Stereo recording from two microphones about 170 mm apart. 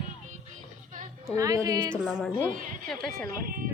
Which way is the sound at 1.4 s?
20° right (ahead or behind).